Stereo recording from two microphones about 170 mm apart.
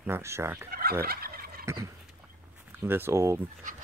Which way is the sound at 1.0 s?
65° right (ahead or behind).